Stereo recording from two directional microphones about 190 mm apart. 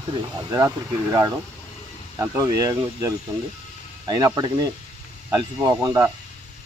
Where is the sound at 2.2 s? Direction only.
20° right (ahead or behind).